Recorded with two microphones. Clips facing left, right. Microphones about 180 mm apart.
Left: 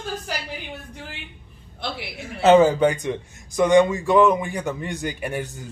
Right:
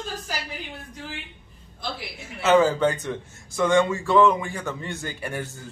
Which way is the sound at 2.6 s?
15° left (ahead or behind).